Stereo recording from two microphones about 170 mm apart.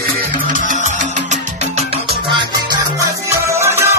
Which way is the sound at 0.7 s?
45° right (ahead or behind).